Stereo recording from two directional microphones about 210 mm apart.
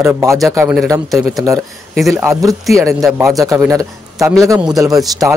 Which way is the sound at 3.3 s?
15° right (ahead or behind).